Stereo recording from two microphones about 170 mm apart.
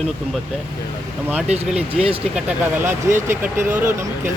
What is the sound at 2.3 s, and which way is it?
Speech, 10° right (ahead or behind).